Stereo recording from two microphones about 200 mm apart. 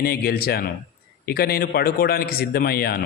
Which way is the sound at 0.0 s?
50° left (ahead or behind).